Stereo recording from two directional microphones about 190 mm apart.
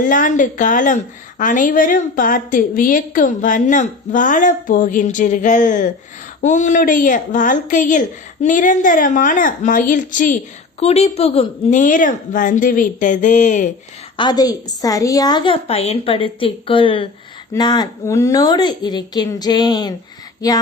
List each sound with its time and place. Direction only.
0.0 s a woman's voice: 45° left (ahead or behind)
10.8 s a woman's voice: 35° left (ahead or behind)
14.2 s a woman's voice: 20° left (ahead or behind)